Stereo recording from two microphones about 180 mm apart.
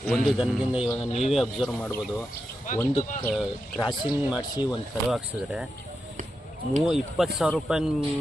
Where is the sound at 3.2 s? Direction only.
5° left (ahead or behind).